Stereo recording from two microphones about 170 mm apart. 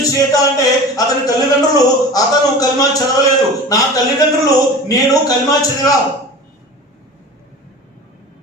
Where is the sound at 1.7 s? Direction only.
20° left (ahead or behind).